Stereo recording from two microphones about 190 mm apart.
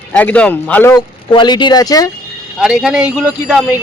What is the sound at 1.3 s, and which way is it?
Speech, 25° left (ahead or behind).